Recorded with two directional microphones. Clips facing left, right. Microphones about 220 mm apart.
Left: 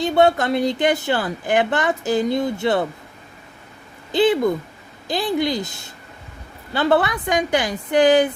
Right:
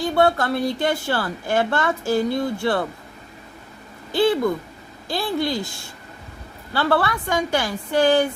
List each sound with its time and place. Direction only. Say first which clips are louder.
0.0 s a woman's voice: left 2 dB; 20° left (ahead or behind)
4.1 s a woman's voice: left 2 dB; 20° left (ahead or behind)